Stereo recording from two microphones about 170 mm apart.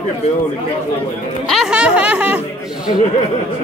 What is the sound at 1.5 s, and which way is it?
Speech, 5° right (ahead or behind).